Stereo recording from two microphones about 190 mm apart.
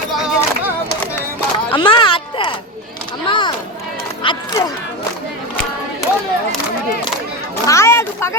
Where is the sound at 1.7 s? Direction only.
25° left (ahead or behind).